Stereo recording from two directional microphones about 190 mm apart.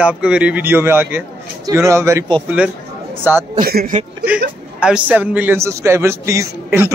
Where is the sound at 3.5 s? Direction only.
50° right (ahead or behind).